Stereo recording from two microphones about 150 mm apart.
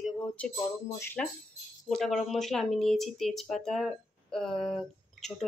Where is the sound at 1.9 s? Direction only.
Centre (ahead or behind).